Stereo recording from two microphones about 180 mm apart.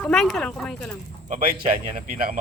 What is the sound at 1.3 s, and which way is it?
A man's voice, 50° right (ahead or behind).